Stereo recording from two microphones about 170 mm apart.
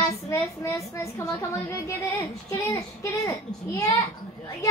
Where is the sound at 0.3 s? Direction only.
15° left (ahead or behind).